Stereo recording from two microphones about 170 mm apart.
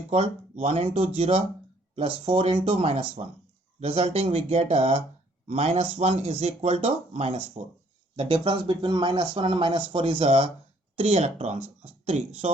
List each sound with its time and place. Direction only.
0.1 s speech: 35° right (ahead or behind)